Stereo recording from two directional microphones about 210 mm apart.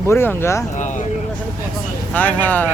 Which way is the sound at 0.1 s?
10° left (ahead or behind).